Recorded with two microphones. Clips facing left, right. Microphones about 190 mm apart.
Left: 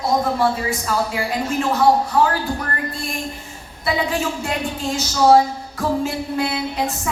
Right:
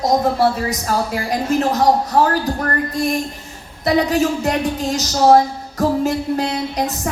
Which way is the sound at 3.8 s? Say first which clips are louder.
Right 6 dB; 40° right (ahead or behind).